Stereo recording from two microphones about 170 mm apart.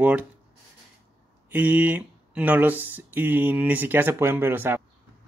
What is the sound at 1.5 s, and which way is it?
Speech, 10° right (ahead or behind).